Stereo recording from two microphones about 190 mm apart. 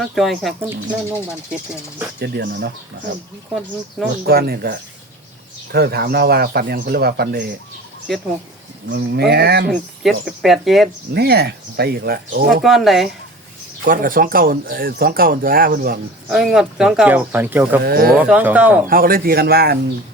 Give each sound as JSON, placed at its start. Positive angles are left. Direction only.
{"t": 0.0, "sound": "speech", "side_deg": 0}
{"t": 2.1, "sound": "a man's voice", "side_deg": -60}
{"t": 4.3, "sound": "a man's voice", "side_deg": -55}
{"t": 8.1, "sound": "speech", "side_deg": 0}
{"t": 8.9, "sound": "a man's voice", "side_deg": -60}
{"t": 10.0, "sound": "speech", "side_deg": 0}
{"t": 11.1, "sound": "a man's voice", "side_deg": -60}
{"t": 12.6, "sound": "speech", "side_deg": 0}
{"t": 13.8, "sound": "speech", "side_deg": -45}
{"t": 16.3, "sound": "speech", "side_deg": 0}
{"t": 17.8, "sound": "speech", "side_deg": -55}
{"t": 18.2, "sound": "speech", "side_deg": -5}
{"t": 18.9, "sound": "speech", "side_deg": -50}